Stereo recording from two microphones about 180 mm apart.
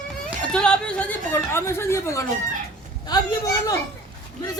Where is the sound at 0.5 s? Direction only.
5° left (ahead or behind).